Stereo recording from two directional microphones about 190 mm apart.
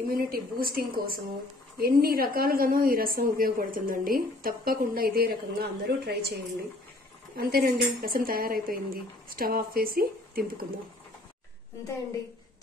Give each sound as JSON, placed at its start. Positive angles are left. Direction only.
{"t": 0.1, "sound": "a woman's voice", "side_deg": -50}
{"t": 7.3, "sound": "a woman's voice", "side_deg": -50}